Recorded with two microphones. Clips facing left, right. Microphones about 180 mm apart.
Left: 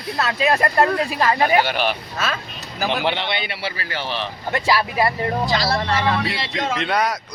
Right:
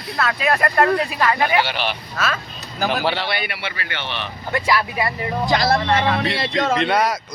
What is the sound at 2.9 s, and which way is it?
Speech, 20° left (ahead or behind).